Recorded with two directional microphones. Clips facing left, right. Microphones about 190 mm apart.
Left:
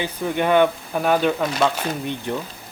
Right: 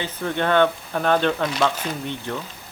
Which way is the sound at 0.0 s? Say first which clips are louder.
Left 2 dB; 10° left (ahead or behind).